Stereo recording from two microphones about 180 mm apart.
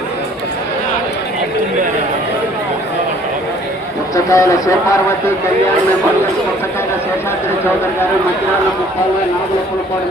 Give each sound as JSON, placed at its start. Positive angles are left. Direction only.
{"t": 4.1, "sound": "speech", "side_deg": 20}